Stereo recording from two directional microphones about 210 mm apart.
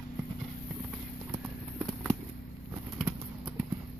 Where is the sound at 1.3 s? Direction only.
Centre (ahead or behind).